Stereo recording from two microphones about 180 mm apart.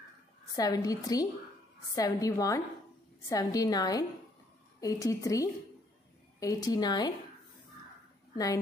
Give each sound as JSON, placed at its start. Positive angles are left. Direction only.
{"t": 0.6, "sound": "a woman's voice", "side_deg": 20}